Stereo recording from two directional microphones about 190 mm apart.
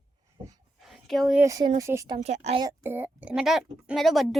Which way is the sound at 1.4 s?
20° right (ahead or behind).